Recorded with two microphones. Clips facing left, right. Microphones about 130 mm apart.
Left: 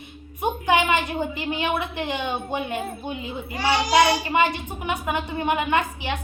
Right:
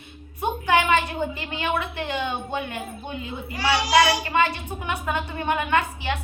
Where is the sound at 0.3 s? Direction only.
15° left (ahead or behind).